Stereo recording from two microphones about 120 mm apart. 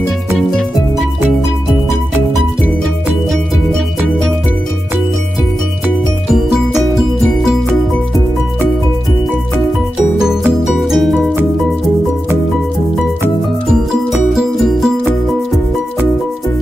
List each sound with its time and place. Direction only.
6.3 s music: centre (ahead or behind)
10.2 s music: 5° right (ahead or behind)
14.3 s music: 5° right (ahead or behind)